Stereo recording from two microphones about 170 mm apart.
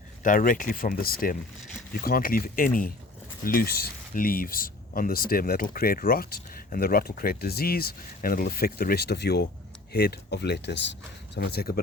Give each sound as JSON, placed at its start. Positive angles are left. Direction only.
{"t": 0.2, "sound": "speech", "side_deg": 55}
{"t": 11.3, "sound": "speech", "side_deg": 70}